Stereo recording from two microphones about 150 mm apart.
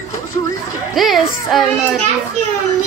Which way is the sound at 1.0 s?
Centre (ahead or behind).